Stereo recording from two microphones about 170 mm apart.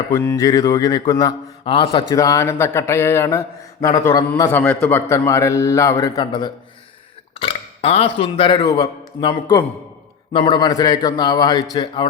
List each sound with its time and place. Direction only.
0.1 s a man's voice: 15° left (ahead or behind)
1.6 s speech: 30° left (ahead or behind)
2.1 s a man's voice: 20° left (ahead or behind)
7.4 s a man's voice: 35° left (ahead or behind)